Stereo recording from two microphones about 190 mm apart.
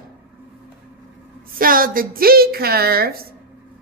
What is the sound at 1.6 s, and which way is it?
A woman's voice, 50° right (ahead or behind).